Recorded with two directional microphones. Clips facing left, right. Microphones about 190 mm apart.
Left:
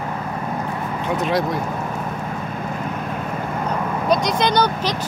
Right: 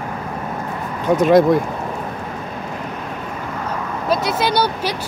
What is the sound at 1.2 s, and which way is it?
Speech, 50° right (ahead or behind).